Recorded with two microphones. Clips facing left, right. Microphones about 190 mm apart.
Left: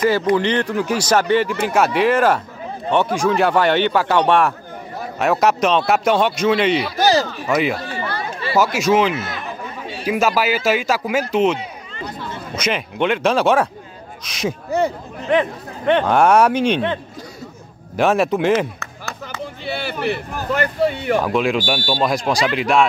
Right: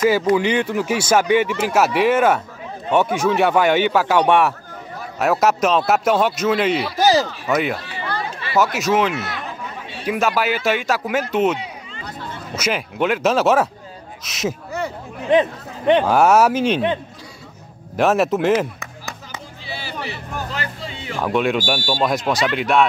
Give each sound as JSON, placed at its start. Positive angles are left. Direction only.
{"t": 0.0, "sound": "speech", "side_deg": -10}
{"t": 7.8, "sound": "chatter", "side_deg": 45}
{"t": 8.5, "sound": "speech", "side_deg": 0}
{"t": 9.1, "sound": "speech", "side_deg": -70}
{"t": 10.0, "sound": "speech", "side_deg": 0}
{"t": 16.1, "sound": "speech", "side_deg": -5}
{"t": 17.9, "sound": "speech", "side_deg": 0}
{"t": 18.8, "sound": "chop", "side_deg": -15}
{"t": 19.4, "sound": "speech", "side_deg": 60}
{"t": 21.2, "sound": "speech", "side_deg": 0}